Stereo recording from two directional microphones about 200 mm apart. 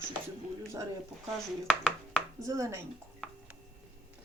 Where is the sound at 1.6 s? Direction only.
5° left (ahead or behind).